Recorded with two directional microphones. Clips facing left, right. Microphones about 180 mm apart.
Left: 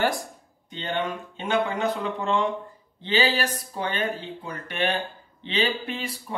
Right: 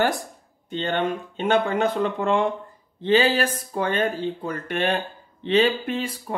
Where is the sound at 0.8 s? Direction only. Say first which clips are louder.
Right 3 dB; 60° right (ahead or behind).